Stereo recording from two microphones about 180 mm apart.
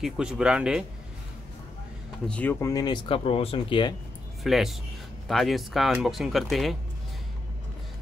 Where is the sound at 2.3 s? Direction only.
10° left (ahead or behind); by 3.9 s 25° left (ahead or behind).